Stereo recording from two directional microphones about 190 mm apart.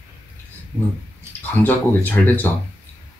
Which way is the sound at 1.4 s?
10° left (ahead or behind).